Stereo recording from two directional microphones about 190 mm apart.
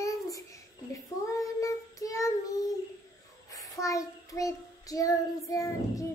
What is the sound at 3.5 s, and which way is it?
Child singing, 15° left (ahead or behind).